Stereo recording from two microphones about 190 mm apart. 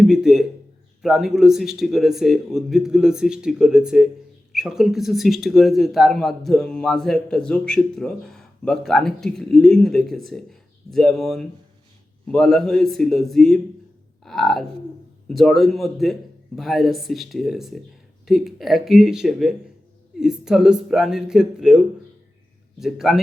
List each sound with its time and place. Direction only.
0.0 s speech: centre (ahead or behind)
14.3 s a sound: centre (ahead or behind)
15.3 s speech: centre (ahead or behind)